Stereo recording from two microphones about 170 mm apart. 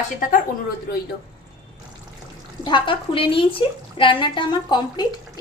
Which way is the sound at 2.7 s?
30° left (ahead or behind).